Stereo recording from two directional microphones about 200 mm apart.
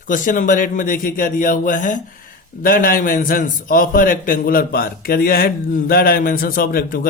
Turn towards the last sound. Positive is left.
turn(degrees=45)  # may be behind; listen again after turning